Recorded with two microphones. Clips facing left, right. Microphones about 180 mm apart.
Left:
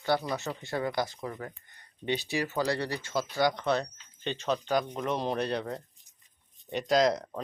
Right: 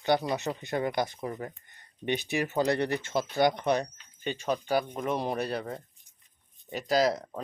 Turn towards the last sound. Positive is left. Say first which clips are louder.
# left 1 dB
turn(degrees=-5)  # may be behind; listen again after turning